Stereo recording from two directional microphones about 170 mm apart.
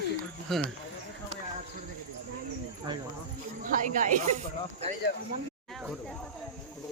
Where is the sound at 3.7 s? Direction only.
50° right (ahead or behind).